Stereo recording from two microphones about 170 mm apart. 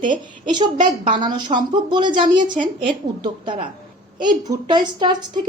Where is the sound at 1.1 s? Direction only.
30° right (ahead or behind).